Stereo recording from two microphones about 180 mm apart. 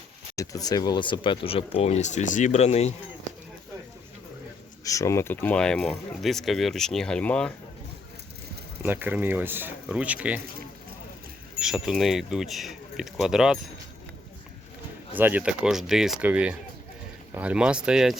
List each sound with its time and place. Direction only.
0.3 s speech: 20° left (ahead or behind); by 2.9 s 35° left (ahead or behind)
4.8 s speech: 20° left (ahead or behind)
8.8 s speech: 10° right (ahead or behind)
11.6 s speech: 5° right (ahead or behind)
15.1 s speech: 10° right (ahead or behind)